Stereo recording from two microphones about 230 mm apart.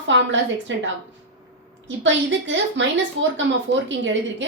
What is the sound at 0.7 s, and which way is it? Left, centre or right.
Speech, right.